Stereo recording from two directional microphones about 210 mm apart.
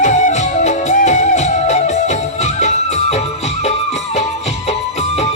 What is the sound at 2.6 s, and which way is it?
Music, 35° left (ahead or behind).